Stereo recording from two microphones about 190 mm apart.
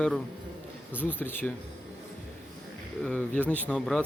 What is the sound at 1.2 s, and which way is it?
Speech, 10° left (ahead or behind).